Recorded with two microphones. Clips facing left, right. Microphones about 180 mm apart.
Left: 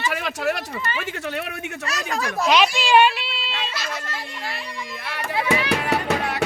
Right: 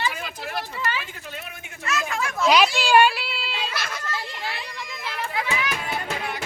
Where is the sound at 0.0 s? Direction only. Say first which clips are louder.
Left 6 dB; 80° left.